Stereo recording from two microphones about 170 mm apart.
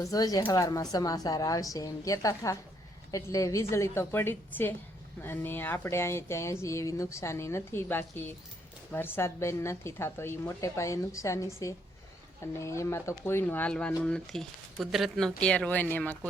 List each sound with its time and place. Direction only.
0.0 s speech: 20° left (ahead or behind)